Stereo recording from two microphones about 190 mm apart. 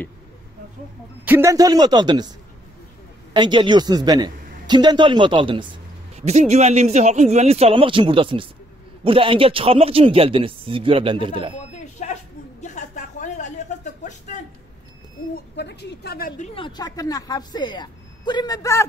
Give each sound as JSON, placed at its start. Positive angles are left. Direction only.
{"t": 1.2, "sound": "a man's voice", "side_deg": -15}
{"t": 3.3, "sound": "a man's voice", "side_deg": -25}
{"t": 11.7, "sound": "a sound", "side_deg": 40}
{"t": 15.5, "sound": "a woman's voice", "side_deg": 60}
{"t": 16.5, "sound": "speech", "side_deg": 25}